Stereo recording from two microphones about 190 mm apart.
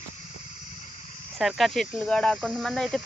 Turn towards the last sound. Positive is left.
turn(degrees=0)  # may be behind; listen again after turning